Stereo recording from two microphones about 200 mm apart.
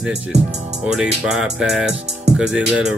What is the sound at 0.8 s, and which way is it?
Music, 5° right (ahead or behind).